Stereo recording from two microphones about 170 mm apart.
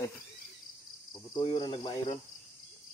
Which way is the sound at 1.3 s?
25° left (ahead or behind).